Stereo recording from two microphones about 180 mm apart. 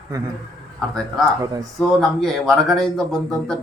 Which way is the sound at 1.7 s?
Centre (ahead or behind).